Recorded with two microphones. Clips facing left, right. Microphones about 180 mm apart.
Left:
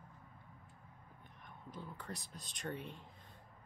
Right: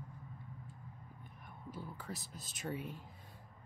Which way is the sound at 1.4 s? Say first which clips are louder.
Right 2 dB; 5° right (ahead or behind).